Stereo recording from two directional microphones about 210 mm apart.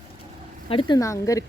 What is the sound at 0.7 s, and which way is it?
Speech, 25° left (ahead or behind).